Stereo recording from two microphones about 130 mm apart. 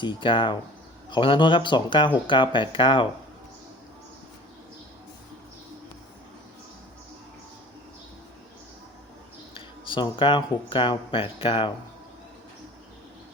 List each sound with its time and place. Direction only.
0.0 s speech: 40° left (ahead or behind)
9.6 s speech: 40° left (ahead or behind)